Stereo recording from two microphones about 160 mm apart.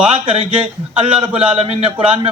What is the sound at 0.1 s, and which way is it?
Speech, 40° right (ahead or behind).